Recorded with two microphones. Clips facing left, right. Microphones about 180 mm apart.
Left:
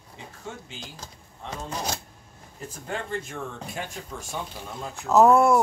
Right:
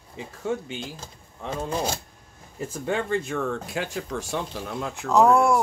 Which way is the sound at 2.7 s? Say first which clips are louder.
Right 6 dB; 75° right (ahead or behind).